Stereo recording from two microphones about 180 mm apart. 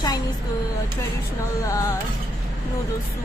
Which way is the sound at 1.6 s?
20° left (ahead or behind).